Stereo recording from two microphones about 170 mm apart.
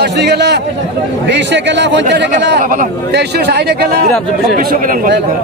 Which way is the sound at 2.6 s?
55° right (ahead or behind).